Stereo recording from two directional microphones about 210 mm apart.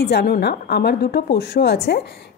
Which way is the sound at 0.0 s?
50° left (ahead or behind).